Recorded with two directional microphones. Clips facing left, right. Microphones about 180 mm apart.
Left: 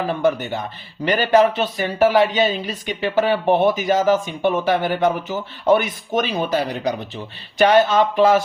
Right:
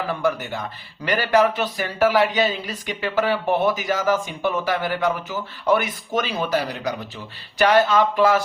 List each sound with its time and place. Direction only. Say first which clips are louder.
0.1 s speech: left 4 dB; 25° left (ahead or behind)